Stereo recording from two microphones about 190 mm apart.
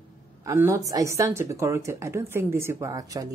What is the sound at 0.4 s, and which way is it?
A woman's voice, 15° right (ahead or behind).